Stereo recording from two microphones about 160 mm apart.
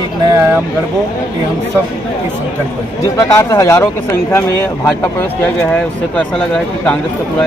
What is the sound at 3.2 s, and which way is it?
Speech, 20° left (ahead or behind).